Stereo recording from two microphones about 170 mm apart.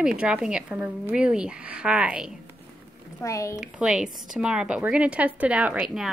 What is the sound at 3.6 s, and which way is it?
A woman's voice, 5° right (ahead or behind).